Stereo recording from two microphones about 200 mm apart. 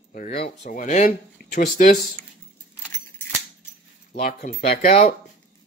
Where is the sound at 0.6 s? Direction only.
35° left (ahead or behind).